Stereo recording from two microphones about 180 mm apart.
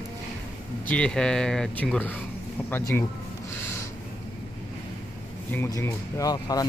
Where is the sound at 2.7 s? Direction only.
15° left (ahead or behind).